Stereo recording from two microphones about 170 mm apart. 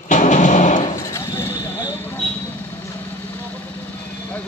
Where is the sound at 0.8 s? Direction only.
20° left (ahead or behind).